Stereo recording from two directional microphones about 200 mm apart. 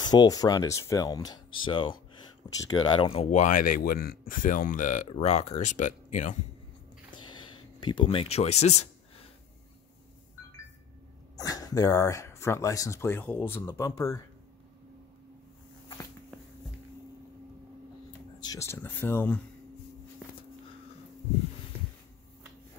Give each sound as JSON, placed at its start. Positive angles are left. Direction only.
{"t": 0.0, "sound": "speech", "side_deg": 20}
{"t": 7.2, "sound": "a sound", "side_deg": 25}
{"t": 11.3, "sound": "speech", "side_deg": 20}
{"t": 18.4, "sound": "speech", "side_deg": 15}